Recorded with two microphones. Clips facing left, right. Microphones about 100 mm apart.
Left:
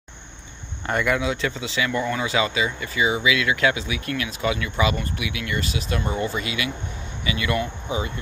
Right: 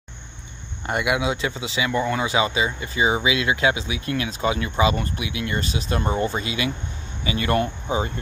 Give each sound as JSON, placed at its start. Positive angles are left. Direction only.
{"t": 0.8, "sound": "speech", "side_deg": -10}